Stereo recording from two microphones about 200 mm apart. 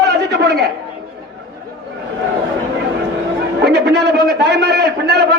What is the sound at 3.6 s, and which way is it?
A man's voice, 55° right (ahead or behind).